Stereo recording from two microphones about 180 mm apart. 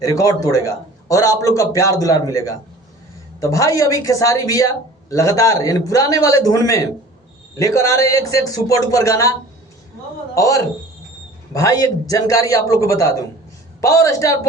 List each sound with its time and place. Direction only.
0.0 s a man's voice: 20° left (ahead or behind)
3.4 s a man's voice: 15° left (ahead or behind)
10.3 s a man's voice: 20° left (ahead or behind)